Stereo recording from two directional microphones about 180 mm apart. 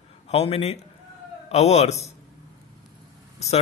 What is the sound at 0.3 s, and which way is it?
Speech, 35° left (ahead or behind).